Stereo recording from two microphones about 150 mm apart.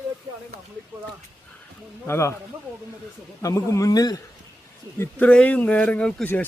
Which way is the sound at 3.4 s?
20° left (ahead or behind).